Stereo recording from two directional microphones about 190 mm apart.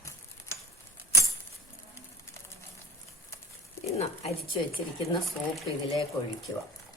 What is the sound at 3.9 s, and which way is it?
Speech, 35° left (ahead or behind).